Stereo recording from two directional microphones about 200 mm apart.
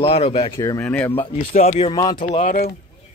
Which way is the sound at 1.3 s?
35° left (ahead or behind).